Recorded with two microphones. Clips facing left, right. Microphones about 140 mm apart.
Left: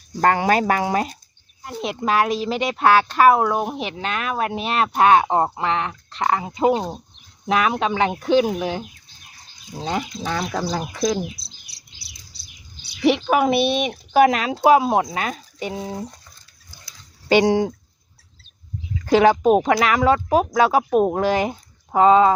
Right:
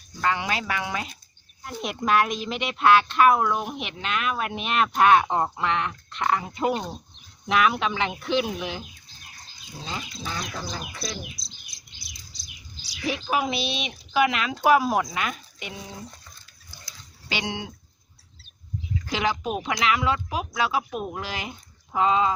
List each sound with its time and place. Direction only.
0.2 s speech: 50° left (ahead or behind)
1.6 s speech: 25° left (ahead or behind)
7.4 s speech: 35° left (ahead or behind)
10.1 s speech: 20° left (ahead or behind)
10.5 s bird: 85° left; by 12.0 s 65° left (ahead or behind)
12.4 s speech: 70° left (ahead or behind); by 16.0 s 30° left (ahead or behind)
17.2 s speech: 45° left (ahead or behind)
19.0 s speech: 50° left (ahead or behind)